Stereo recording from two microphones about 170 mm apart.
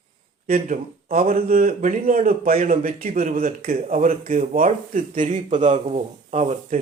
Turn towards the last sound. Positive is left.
turn(degrees=-40)  # may be behind; listen again after turning